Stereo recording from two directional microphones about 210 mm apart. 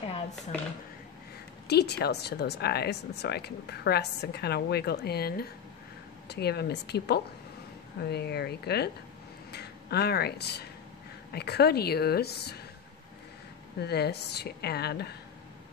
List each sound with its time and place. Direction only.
1.7 s speech: 50° left (ahead or behind)
13.7 s speech: 50° left (ahead or behind)